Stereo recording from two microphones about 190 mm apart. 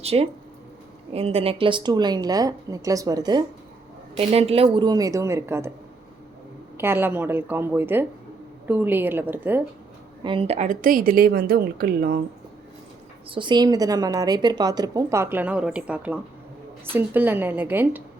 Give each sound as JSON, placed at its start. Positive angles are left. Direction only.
{"t": 0.0, "sound": "a woman's voice", "side_deg": -30}
{"t": 4.2, "sound": "a woman's voice", "side_deg": -30}
{"t": 6.7, "sound": "a woman's voice", "side_deg": -10}
{"t": 10.2, "sound": "a woman's voice", "side_deg": -30}
{"t": 13.3, "sound": "a woman's voice", "side_deg": -25}